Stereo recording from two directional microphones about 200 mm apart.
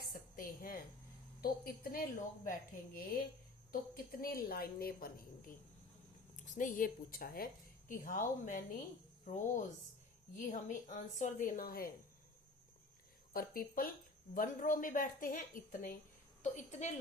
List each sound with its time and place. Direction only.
0.1 s a sound: 45° left (ahead or behind)
1.4 s a woman's voice: 50° left (ahead or behind)
13.3 s speech: 45° left (ahead or behind)